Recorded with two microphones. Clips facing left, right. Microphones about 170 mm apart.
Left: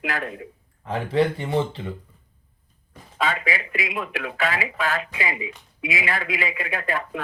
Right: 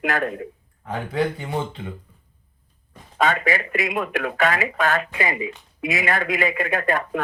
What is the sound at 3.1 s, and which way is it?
A man's voice, 50° right (ahead or behind).